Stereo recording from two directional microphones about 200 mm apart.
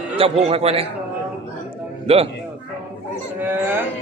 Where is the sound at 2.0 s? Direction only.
30° right (ahead or behind).